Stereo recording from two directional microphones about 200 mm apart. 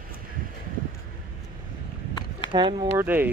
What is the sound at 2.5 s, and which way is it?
Speech, 25° right (ahead or behind).